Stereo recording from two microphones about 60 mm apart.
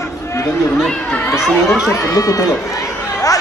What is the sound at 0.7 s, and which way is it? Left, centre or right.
Speech, centre.